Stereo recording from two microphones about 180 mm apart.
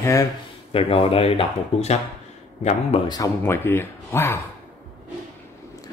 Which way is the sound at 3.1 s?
15° left (ahead or behind).